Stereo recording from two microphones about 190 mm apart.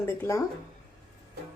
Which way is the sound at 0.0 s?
15° left (ahead or behind).